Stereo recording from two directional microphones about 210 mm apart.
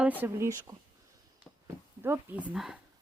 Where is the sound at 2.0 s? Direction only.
10° right (ahead or behind).